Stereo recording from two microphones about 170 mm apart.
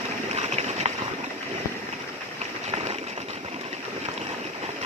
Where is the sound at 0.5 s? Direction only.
40° right (ahead or behind).